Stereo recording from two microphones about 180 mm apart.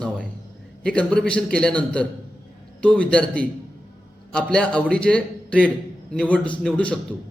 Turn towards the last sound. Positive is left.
turn(degrees=5)  # may be behind; listen again after turning